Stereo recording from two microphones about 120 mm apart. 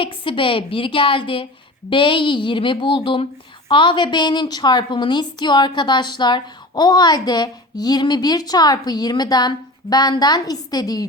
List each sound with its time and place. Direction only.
0.0 s a woman's voice: 45° left (ahead or behind)